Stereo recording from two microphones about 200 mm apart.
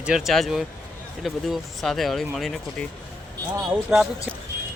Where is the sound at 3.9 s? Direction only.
5° right (ahead or behind).